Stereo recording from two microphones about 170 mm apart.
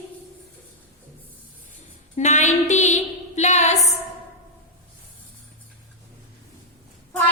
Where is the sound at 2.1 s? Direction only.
45° left (ahead or behind).